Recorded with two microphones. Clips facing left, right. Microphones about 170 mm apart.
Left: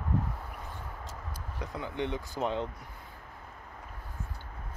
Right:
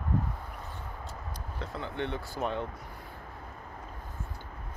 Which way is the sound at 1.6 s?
15° left (ahead or behind).